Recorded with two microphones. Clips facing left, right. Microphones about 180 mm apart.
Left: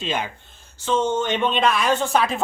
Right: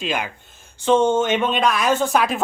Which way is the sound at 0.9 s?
55° right (ahead or behind).